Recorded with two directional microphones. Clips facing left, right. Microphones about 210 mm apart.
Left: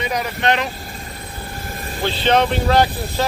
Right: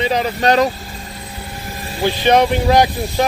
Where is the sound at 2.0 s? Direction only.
15° right (ahead or behind).